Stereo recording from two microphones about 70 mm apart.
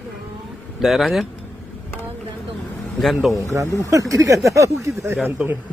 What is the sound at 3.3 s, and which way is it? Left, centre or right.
Speech, right.